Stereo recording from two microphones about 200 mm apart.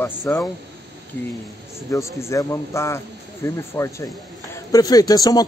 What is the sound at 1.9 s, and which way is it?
Speech, 15° left (ahead or behind).